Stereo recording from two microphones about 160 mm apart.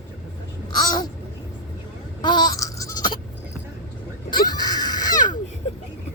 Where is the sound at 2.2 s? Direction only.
25° left (ahead or behind).